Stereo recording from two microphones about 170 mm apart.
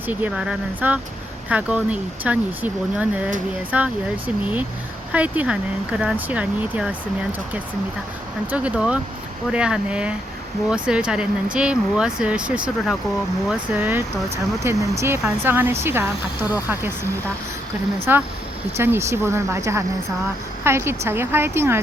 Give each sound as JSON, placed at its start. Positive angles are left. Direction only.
{"t": 0.1, "sound": "speech", "side_deg": -10}
{"t": 5.1, "sound": "speech", "side_deg": -10}
{"t": 8.4, "sound": "speech", "side_deg": -5}
{"t": 18.1, "sound": "speech", "side_deg": -10}